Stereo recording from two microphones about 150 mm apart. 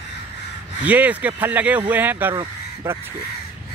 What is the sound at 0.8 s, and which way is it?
Speech, 10° right (ahead or behind).